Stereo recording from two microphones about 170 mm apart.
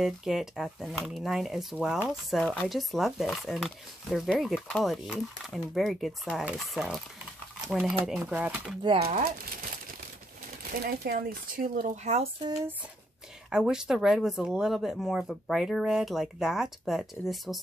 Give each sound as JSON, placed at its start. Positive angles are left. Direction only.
{"t": 0.0, "sound": "speech", "side_deg": 0}
{"t": 8.2, "sound": "speech", "side_deg": -10}
{"t": 8.8, "sound": "speech", "side_deg": -30}
{"t": 9.1, "sound": "speech", "side_deg": -55}
{"t": 13.5, "sound": "speech", "side_deg": -5}